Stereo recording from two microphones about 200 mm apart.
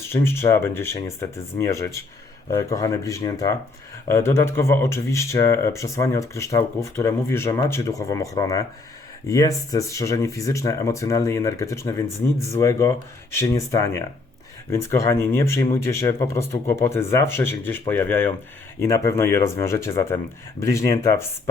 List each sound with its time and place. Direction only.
0.1 s speech: 10° left (ahead or behind)